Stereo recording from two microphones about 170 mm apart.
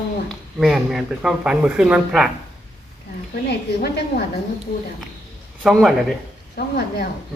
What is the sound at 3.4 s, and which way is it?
Speech, 70° left (ahead or behind).